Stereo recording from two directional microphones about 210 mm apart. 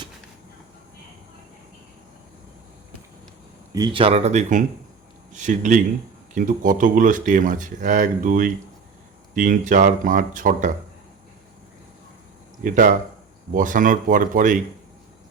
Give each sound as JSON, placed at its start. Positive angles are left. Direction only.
{"t": 3.7, "sound": "speech", "side_deg": -20}
{"t": 12.6, "sound": "speech", "side_deg": -40}